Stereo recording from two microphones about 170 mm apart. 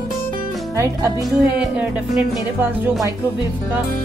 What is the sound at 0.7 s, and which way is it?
Speech, 15° right (ahead or behind).